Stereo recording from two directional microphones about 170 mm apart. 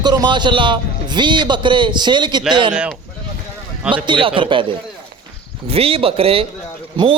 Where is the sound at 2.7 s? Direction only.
5° right (ahead or behind).